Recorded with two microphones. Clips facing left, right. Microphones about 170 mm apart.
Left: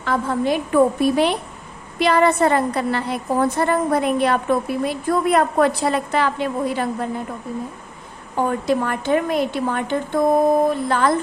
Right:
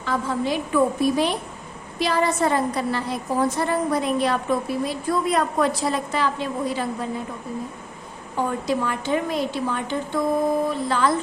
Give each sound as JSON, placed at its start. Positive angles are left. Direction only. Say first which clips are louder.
{"t": 0.0, "sound": "a woman's voice", "louder": "left 4 dB", "side_deg": 60}
{"t": 8.4, "sound": "a woman's voice", "louder": "left 4 dB", "side_deg": 55}